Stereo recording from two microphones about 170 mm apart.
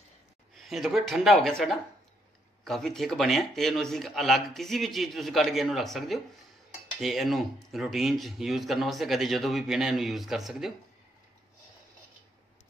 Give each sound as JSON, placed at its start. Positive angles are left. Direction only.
{"t": 0.6, "sound": "speech", "side_deg": 0}